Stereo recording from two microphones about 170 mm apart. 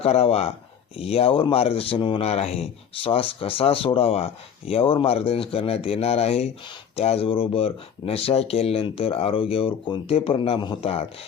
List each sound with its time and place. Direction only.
0.0 s speech: 35° left (ahead or behind)